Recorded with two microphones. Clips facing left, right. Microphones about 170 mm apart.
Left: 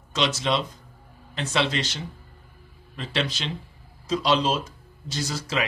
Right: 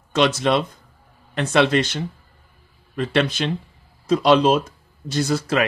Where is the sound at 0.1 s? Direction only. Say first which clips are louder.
Right 7 dB; 55° right (ahead or behind).